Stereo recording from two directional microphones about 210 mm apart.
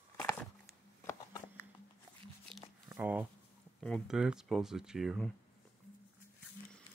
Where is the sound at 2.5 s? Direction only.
25° right (ahead or behind).